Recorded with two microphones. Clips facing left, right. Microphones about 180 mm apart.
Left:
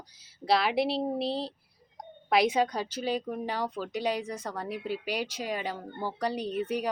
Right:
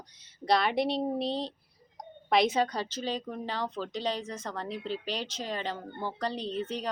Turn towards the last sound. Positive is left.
turn(degrees=10)  # may be behind; listen again after turning